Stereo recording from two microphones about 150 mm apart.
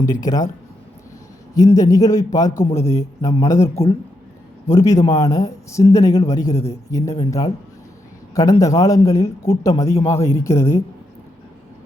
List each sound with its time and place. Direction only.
0.0 s a man's voice: 25° left (ahead or behind)
1.5 s a man's voice: 25° left (ahead or behind)